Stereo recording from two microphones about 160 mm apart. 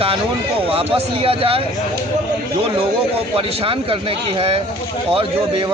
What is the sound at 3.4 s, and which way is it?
Speech, 35° right (ahead or behind).